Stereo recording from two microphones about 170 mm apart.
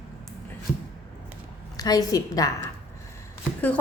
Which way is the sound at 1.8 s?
20° left (ahead or behind).